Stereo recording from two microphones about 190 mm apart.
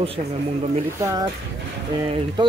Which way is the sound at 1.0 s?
15° right (ahead or behind).